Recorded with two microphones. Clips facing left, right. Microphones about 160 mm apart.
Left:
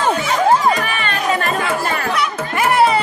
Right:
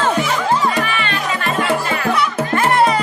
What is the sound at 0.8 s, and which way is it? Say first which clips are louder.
Music: left 1 dB; 45° left (ahead or behind).